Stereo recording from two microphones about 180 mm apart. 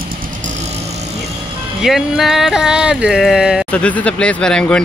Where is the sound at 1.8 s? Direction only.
Centre (ahead or behind).